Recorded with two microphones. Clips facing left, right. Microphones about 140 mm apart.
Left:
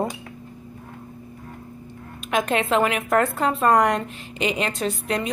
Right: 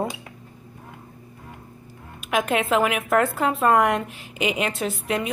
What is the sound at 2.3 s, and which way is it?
A woman's voice, 5° right (ahead or behind).